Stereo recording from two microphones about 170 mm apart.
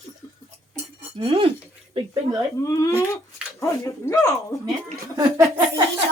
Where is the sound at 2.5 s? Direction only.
20° left (ahead or behind).